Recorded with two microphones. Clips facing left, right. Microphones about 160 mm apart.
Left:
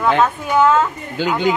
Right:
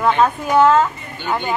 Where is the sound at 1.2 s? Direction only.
90° left.